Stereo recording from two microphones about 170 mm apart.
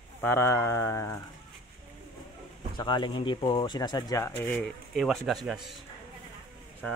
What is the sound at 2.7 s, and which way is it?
Speech, 25° left (ahead or behind).